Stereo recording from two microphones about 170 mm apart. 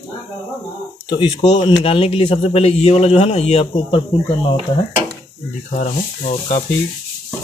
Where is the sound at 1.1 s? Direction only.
25° left (ahead or behind).